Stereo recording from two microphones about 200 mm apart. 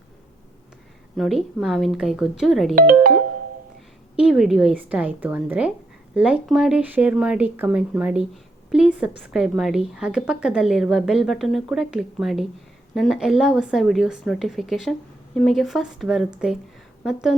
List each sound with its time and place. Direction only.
1.1 s a woman's voice: centre (ahead or behind)
2.7 s speech: 45° right (ahead or behind)
4.2 s a woman's voice: centre (ahead or behind)